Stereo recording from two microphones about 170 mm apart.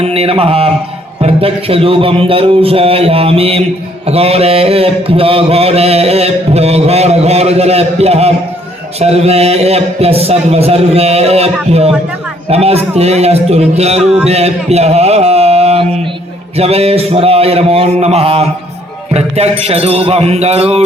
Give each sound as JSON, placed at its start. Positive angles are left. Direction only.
{"t": 0.0, "sound": "mantra", "side_deg": -35}
{"t": 14.3, "sound": "music", "side_deg": -40}
{"t": 16.6, "sound": "mantra", "side_deg": -35}